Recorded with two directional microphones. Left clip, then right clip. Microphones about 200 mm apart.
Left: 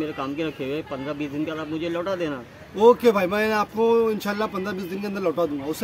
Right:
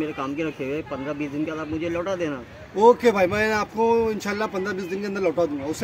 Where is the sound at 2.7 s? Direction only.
20° left (ahead or behind).